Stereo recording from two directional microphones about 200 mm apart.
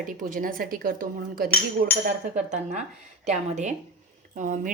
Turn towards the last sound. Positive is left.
turn(degrees=-40)  # may be behind; listen again after turning